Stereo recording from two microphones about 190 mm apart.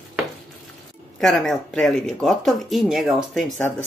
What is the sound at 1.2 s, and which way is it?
Speech, centre (ahead or behind).